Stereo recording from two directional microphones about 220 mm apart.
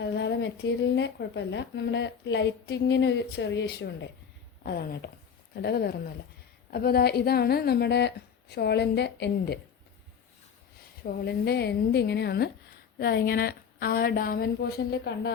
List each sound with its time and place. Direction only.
0.0 s speech: 50° left (ahead or behind)
11.0 s speech: 45° left (ahead or behind)